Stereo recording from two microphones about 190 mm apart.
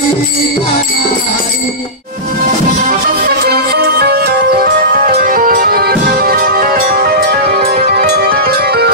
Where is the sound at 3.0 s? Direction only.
55° right (ahead or behind).